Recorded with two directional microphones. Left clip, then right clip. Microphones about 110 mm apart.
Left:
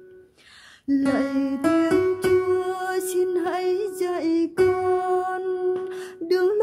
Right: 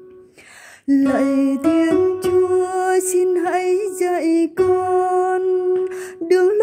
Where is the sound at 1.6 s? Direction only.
25° left (ahead or behind).